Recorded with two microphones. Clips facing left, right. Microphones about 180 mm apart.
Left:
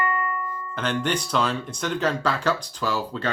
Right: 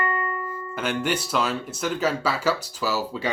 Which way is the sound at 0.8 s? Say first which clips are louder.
Even; 5° right (ahead or behind).